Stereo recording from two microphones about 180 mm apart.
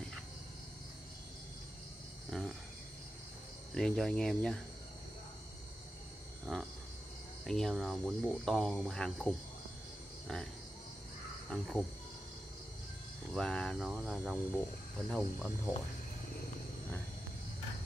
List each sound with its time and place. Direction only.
2.3 s speech: centre (ahead or behind)
3.7 s speech: centre (ahead or behind)
6.4 s a sound: 5° right (ahead or behind)
7.4 s speech: centre (ahead or behind)
11.5 s speech: centre (ahead or behind)
13.3 s speech: 5° left (ahead or behind)